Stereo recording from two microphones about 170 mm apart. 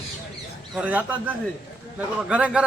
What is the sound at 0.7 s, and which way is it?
Speech, 10° right (ahead or behind).